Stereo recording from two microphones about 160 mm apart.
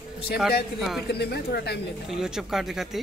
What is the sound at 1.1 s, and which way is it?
Speech, 90° left.